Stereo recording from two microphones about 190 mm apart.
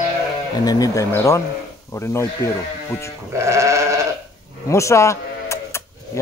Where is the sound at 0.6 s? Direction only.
20° left (ahead or behind).